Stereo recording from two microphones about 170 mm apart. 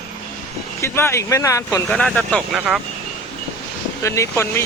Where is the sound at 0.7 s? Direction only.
15° left (ahead or behind).